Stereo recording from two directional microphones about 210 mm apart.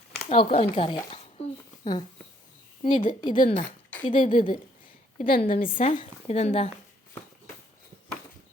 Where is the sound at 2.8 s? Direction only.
30° left (ahead or behind).